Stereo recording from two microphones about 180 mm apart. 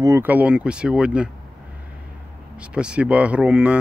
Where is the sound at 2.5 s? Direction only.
5° right (ahead or behind).